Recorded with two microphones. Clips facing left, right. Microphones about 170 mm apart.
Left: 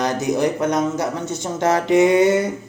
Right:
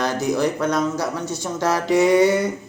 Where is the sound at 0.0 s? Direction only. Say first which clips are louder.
Left 1 dB; 20° left (ahead or behind).